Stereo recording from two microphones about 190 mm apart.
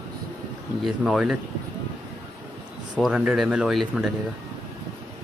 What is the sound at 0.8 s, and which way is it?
Speech, 5° right (ahead or behind).